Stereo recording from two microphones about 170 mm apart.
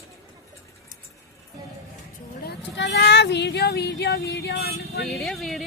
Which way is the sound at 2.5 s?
80° left.